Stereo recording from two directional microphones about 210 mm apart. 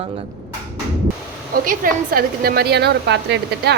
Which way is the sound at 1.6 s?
45° right (ahead or behind).